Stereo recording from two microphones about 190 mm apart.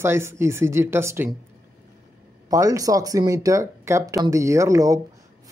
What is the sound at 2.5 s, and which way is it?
Speech, 15° right (ahead or behind).